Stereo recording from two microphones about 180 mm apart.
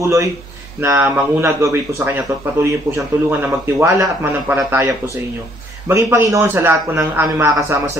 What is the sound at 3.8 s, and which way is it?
A man's voice, 15° right (ahead or behind).